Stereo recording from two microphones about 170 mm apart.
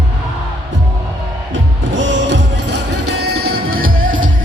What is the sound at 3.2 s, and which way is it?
Music, 65° right (ahead or behind).